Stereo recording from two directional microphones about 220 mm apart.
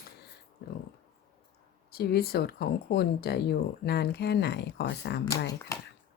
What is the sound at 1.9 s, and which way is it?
Speech, 45° left (ahead or behind).